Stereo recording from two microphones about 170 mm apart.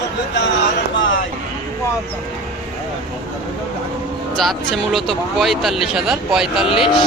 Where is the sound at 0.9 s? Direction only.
90° left.